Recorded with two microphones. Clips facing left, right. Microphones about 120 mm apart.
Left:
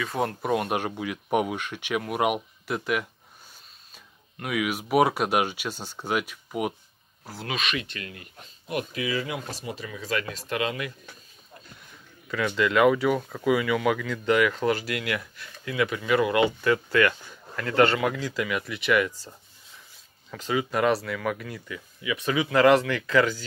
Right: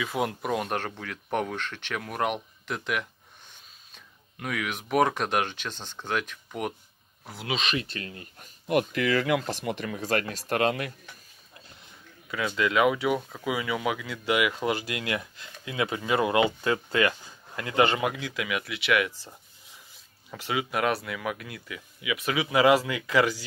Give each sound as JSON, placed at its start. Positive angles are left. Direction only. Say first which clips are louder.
{"t": 0.0, "sound": "speech", "louder": "left 1 dB", "side_deg": -5}
{"t": 7.6, "sound": "speech", "louder": "right 1 dB", "side_deg": -35}
{"t": 8.4, "sound": "speech", "louder": "right 6 dB", "side_deg": -55}
{"t": 12.5, "sound": "speech", "louder": "left 3 dB", "side_deg": -5}
{"t": 18.1, "sound": "speech", "louder": "left 3 dB", "side_deg": 0}
{"t": 20.2, "sound": "speech", "louder": "left 3 dB", "side_deg": -10}